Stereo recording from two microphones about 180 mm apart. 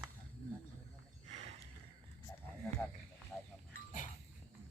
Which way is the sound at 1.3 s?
35° right (ahead or behind).